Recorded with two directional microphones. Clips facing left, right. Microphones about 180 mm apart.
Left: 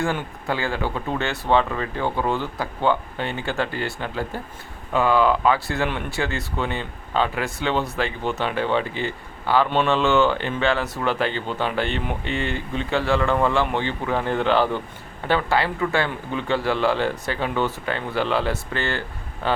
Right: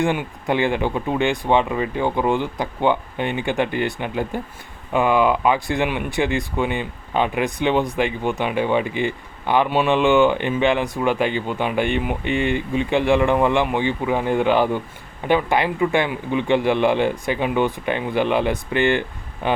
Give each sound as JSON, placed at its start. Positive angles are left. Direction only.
{"t": 0.0, "sound": "speech", "side_deg": -15}